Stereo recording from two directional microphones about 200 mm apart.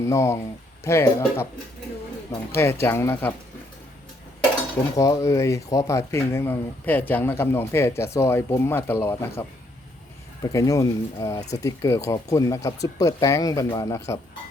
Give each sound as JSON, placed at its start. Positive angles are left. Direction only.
{"t": 0.0, "sound": "speech", "side_deg": 15}
{"t": 2.6, "sound": "speech", "side_deg": 10}
{"t": 4.9, "sound": "speech", "side_deg": 15}